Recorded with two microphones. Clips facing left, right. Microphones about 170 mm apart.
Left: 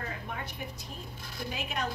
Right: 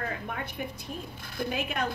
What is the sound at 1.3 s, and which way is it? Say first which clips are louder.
Speech: right 5 dB; 55° right (ahead or behind).